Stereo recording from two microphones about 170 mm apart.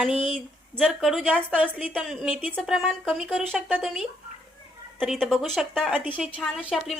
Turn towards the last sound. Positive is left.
turn(degrees=-5)  # may be behind; listen again after turning